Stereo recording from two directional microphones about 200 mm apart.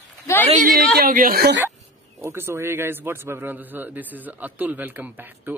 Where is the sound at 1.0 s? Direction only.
45° right (ahead or behind).